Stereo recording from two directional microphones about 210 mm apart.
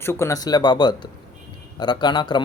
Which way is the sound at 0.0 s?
10° left (ahead or behind).